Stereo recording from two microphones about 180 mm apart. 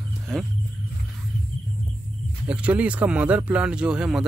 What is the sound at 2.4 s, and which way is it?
Speech, 5° right (ahead or behind).